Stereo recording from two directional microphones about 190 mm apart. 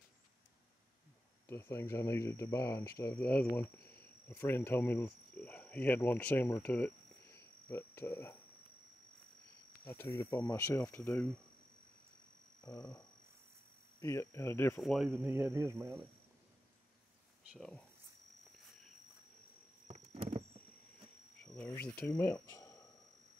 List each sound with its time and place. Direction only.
1.5 s speech: 15° left (ahead or behind)
7.3 s cricket: 10° left (ahead or behind)
9.8 s speech: 15° left (ahead or behind)
12.7 s a sound: 20° left (ahead or behind)
14.0 s speech: 15° left (ahead or behind)
14.8 s speech: centre (ahead or behind)
15.0 s a man's voice: 10° right (ahead or behind)
17.5 s speech: 5° left (ahead or behind)
19.9 s patter: 35° right (ahead or behind)
21.4 s cricket: 5° left (ahead or behind)
22.1 s speech: 10° left (ahead or behind)